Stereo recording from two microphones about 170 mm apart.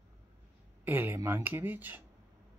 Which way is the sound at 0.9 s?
10° right (ahead or behind).